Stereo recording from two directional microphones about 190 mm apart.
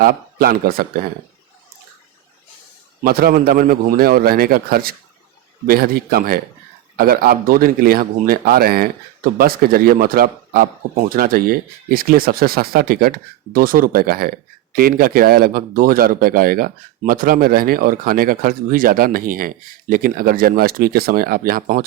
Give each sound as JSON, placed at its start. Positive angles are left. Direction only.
{"t": 0.0, "sound": "speech", "side_deg": -50}
{"t": 3.0, "sound": "speech", "side_deg": -50}